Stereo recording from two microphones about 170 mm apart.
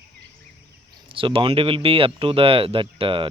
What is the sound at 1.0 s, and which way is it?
Speech, 30° right (ahead or behind).